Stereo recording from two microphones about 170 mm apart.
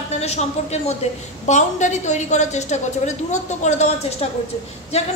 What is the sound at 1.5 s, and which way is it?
A man's voice, 45° left (ahead or behind).